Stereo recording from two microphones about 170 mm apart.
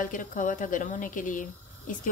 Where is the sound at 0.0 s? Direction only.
50° left (ahead or behind).